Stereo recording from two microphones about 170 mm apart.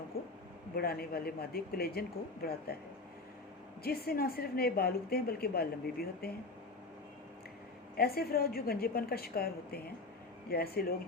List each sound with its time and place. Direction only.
0.8 s a woman's voice: 65° left (ahead or behind)
3.8 s a woman's voice: 65° left (ahead or behind)
7.9 s a woman's voice: 65° left (ahead or behind)